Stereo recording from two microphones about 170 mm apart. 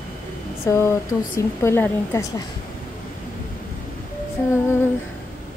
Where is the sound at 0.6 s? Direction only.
15° left (ahead or behind).